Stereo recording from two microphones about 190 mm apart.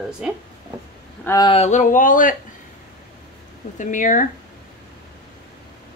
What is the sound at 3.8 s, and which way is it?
Speech, 40° left (ahead or behind).